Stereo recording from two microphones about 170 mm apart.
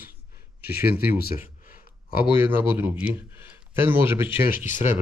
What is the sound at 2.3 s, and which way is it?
Speech, 15° right (ahead or behind).